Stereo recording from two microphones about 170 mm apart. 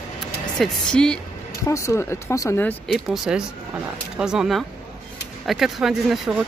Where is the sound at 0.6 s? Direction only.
5° left (ahead or behind).